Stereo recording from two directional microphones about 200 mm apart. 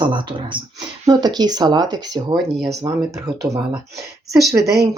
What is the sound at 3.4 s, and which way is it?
Speech, 15° right (ahead or behind).